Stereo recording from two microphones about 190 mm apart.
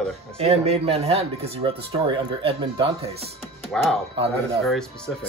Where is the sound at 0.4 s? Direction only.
30° right (ahead or behind).